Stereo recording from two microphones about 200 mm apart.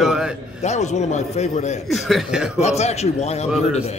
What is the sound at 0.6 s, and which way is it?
A man's voice, 35° left (ahead or behind).